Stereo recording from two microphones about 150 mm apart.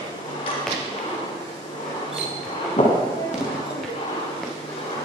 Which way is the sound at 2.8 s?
50° left (ahead or behind).